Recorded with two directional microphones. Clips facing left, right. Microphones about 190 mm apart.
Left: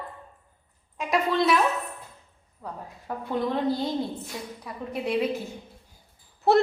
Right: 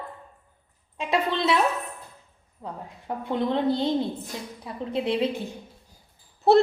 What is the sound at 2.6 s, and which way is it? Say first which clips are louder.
A woman's voice: right 1 dB; 20° right (ahead or behind).